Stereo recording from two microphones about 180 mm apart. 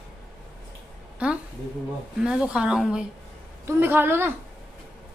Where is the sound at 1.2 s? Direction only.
5° right (ahead or behind).